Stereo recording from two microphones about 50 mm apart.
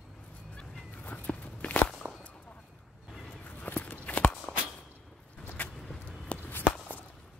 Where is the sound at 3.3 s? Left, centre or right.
Left.